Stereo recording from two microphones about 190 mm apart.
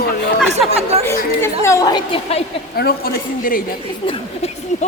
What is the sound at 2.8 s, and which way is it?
Speech, 55° left (ahead or behind).